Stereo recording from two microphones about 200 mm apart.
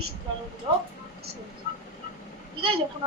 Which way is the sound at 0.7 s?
25° right (ahead or behind).